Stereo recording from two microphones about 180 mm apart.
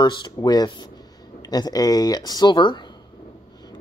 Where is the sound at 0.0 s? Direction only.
25° left (ahead or behind).